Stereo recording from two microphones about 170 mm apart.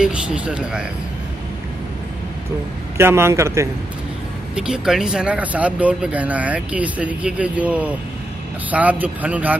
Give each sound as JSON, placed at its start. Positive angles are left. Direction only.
{"t": 0.0, "sound": "speech", "side_deg": -5}
{"t": 3.0, "sound": "speech", "side_deg": -15}
{"t": 4.6, "sound": "speech", "side_deg": -5}